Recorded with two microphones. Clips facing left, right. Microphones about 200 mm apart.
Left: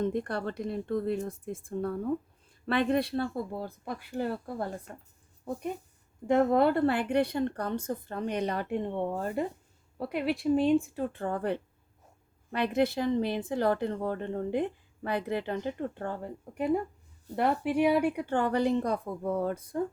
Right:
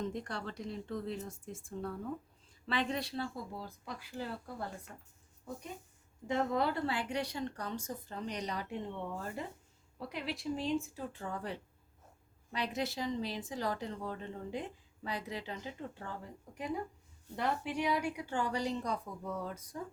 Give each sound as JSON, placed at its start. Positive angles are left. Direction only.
{"t": 0.0, "sound": "speech", "side_deg": 55}